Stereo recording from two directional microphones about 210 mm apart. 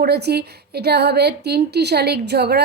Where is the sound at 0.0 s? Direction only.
50° right (ahead or behind).